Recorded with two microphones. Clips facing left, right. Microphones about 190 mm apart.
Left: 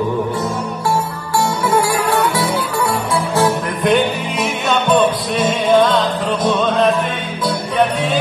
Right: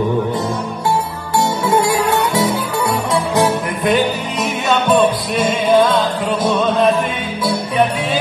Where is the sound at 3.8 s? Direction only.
Centre (ahead or behind).